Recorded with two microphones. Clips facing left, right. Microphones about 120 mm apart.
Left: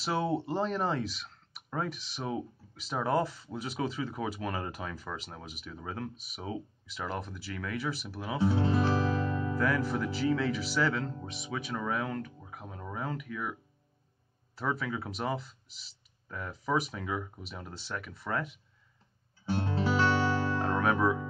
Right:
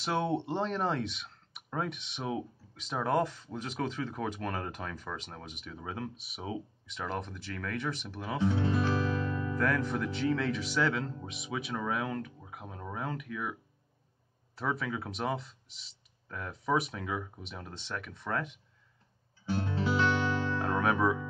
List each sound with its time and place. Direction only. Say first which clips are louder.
0.0 s speech: even; 5° left (ahead or behind)
8.5 s music: left 2 dB; 30° left (ahead or behind)
9.6 s speech: even; 5° left (ahead or behind)
19.5 s music: left 1 dB; 35° left (ahead or behind)
20.5 s music: left 1 dB; centre (ahead or behind)